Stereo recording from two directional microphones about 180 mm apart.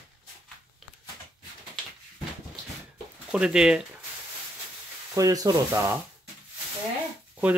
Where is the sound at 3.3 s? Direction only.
5° right (ahead or behind).